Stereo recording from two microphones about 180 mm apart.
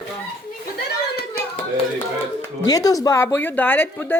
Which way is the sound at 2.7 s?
20° left (ahead or behind).